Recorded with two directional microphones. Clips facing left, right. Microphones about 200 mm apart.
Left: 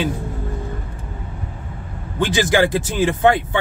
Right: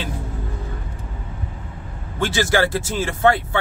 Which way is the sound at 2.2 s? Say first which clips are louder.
Left 3 dB; 15° left (ahead or behind).